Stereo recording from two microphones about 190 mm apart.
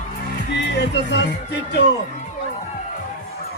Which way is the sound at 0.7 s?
60° left (ahead or behind).